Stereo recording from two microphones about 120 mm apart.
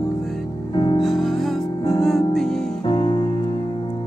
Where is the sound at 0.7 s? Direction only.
40° left (ahead or behind).